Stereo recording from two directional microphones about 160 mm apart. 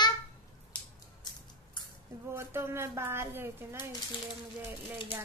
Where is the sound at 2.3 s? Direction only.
15° right (ahead or behind).